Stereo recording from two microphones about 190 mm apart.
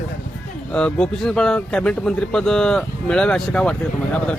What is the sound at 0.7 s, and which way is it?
Speech, 5° left (ahead or behind).